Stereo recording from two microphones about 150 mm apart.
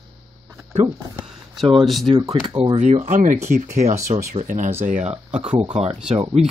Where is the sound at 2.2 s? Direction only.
35° right (ahead or behind).